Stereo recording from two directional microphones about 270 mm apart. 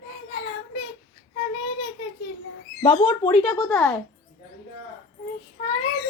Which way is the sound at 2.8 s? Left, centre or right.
Centre.